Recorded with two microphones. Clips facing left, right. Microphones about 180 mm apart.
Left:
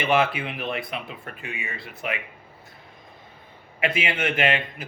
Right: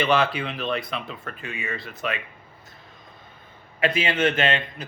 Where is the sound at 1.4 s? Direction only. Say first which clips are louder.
Right 1 dB; 25° right (ahead or behind).